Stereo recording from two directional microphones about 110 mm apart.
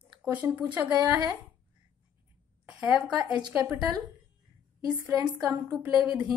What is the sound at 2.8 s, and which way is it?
Speech, 10° right (ahead or behind).